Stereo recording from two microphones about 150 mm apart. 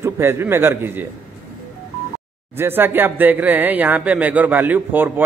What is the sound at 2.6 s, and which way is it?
A man's voice, 15° right (ahead or behind).